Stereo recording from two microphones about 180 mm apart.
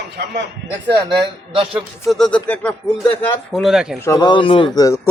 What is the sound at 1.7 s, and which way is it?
Speech, centre (ahead or behind).